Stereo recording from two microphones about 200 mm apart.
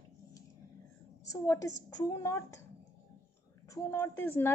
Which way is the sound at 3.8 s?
10° left (ahead or behind).